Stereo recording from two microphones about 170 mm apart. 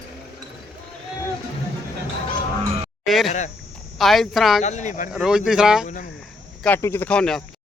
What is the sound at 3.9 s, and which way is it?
Speech, centre (ahead or behind).